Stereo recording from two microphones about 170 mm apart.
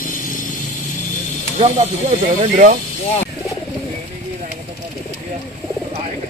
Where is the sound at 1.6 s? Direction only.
35° right (ahead or behind).